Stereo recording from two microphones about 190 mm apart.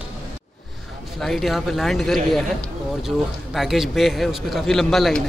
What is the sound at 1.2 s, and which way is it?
Speech, centre (ahead or behind).